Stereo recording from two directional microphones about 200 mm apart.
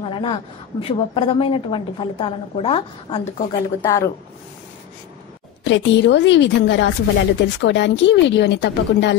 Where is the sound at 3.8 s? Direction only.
15° left (ahead or behind).